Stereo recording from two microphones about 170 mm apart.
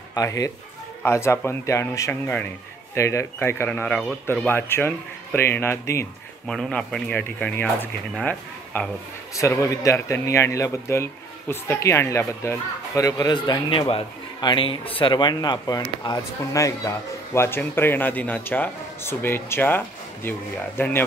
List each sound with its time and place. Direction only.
0.1 s speech: 20° left (ahead or behind)
6.4 s speech: 5° left (ahead or behind)